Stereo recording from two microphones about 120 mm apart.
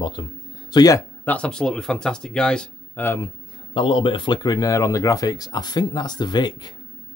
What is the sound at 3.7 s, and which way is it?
Speech, 45° left (ahead or behind).